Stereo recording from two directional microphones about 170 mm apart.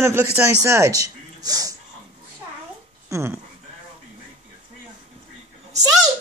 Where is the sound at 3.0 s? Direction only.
15° right (ahead or behind).